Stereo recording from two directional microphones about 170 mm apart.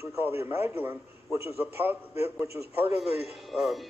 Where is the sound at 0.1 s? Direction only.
15° right (ahead or behind).